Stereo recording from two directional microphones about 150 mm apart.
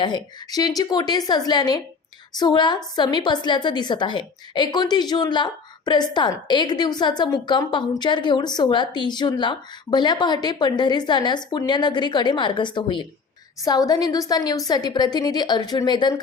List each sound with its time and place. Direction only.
0.0 s a woman's voice: 25° left (ahead or behind)